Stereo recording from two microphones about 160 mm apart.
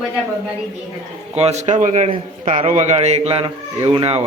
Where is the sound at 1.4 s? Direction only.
45° right (ahead or behind).